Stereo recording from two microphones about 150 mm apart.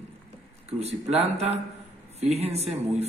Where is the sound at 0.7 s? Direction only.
45° right (ahead or behind).